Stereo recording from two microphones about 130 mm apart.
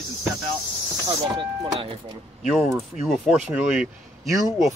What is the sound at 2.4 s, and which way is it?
Speech, centre (ahead or behind).